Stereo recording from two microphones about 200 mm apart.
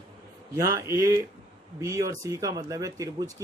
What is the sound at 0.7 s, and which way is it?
Speech, 15° right (ahead or behind).